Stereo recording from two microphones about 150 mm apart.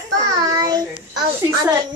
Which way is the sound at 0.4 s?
25° right (ahead or behind).